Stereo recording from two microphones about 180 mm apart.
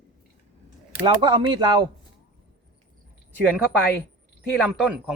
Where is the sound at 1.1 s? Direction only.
25° right (ahead or behind).